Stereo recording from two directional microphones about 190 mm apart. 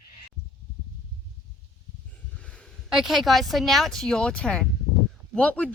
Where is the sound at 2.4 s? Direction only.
5° left (ahead or behind).